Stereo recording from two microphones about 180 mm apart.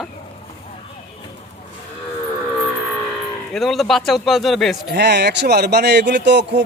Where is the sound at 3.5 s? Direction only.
Centre (ahead or behind).